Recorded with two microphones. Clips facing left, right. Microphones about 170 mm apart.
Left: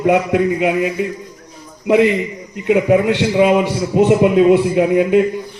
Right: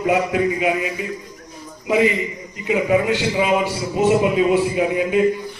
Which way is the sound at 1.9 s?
65° left (ahead or behind).